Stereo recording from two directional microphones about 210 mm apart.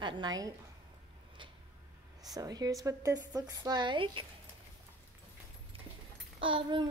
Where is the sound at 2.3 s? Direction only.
20° right (ahead or behind).